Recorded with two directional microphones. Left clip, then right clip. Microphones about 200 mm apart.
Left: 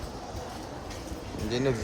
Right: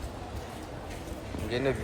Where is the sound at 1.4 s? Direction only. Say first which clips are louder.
Left 1 dB; 25° left (ahead or behind).